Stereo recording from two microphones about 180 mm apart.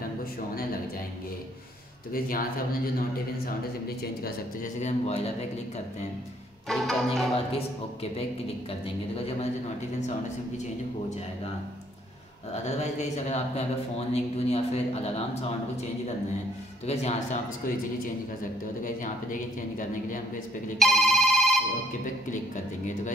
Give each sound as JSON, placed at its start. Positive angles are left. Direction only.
{"t": 2.1, "sound": "speech", "side_deg": 55}
{"t": 4.8, "sound": "speech", "side_deg": 35}
{"t": 6.7, "sound": "music", "side_deg": 0}
{"t": 7.3, "sound": "speech", "side_deg": 35}
{"t": 12.6, "sound": "speech", "side_deg": 40}
{"t": 16.8, "sound": "speech", "side_deg": 35}
{"t": 18.9, "sound": "speech", "side_deg": 50}
{"t": 20.8, "sound": "telephone bell ringing", "side_deg": 0}